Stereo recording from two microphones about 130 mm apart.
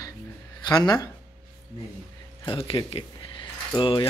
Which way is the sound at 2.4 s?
45° left (ahead or behind).